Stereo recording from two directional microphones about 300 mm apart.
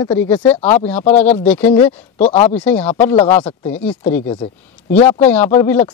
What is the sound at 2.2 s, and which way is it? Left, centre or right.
Speech, centre.